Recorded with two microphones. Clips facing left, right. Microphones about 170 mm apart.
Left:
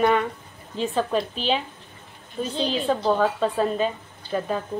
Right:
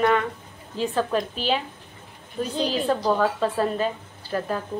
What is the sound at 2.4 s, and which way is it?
A woman's voice, 10° right (ahead or behind).